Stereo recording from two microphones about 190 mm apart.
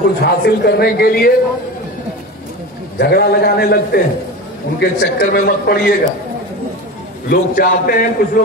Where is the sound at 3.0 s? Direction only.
55° left (ahead or behind).